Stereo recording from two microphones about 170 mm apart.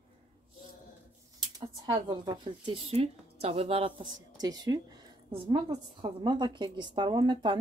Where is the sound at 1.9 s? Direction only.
25° right (ahead or behind).